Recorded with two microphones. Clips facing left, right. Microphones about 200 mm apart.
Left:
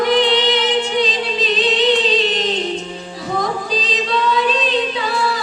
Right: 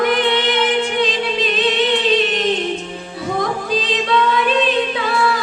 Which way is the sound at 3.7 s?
55° right (ahead or behind).